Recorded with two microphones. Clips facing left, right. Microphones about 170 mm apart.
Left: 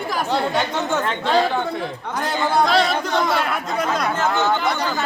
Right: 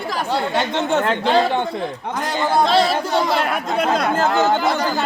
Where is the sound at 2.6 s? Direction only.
30° right (ahead or behind).